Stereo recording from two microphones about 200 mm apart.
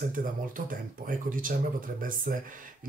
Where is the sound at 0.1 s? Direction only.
45° right (ahead or behind).